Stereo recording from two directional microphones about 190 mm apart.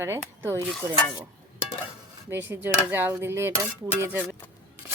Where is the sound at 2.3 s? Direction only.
10° right (ahead or behind).